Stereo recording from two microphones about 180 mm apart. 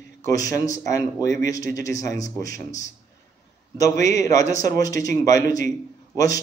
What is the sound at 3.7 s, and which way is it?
A man's voice, 20° left (ahead or behind).